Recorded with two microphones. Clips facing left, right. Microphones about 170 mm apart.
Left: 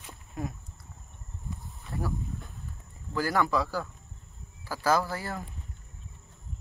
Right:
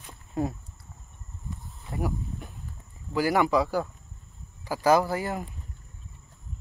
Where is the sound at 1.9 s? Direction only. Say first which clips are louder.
Right 3 dB; 15° right (ahead or behind).